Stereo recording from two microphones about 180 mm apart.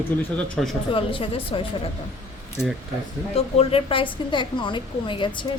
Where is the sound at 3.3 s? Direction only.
30° left (ahead or behind).